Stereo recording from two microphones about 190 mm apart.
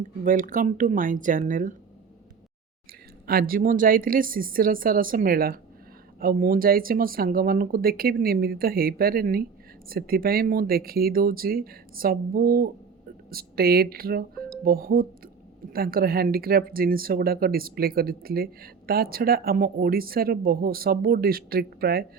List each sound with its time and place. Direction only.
0.3 s speech: 45° right (ahead or behind)
3.2 s speech: 50° right (ahead or behind)